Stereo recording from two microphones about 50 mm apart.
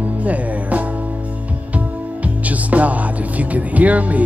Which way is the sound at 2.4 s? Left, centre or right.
Right.